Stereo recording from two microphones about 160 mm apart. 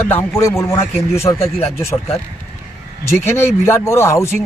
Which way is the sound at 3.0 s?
15° left (ahead or behind).